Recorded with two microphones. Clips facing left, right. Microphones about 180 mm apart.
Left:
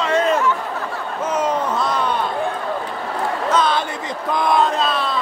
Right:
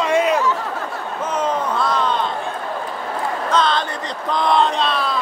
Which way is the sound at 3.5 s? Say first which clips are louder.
Even; 10° left (ahead or behind).